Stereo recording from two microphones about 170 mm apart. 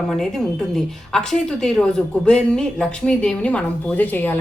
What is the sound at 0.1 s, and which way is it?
A woman's voice, 5° left (ahead or behind).